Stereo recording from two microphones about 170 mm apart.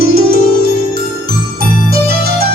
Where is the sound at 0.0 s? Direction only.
65° right (ahead or behind).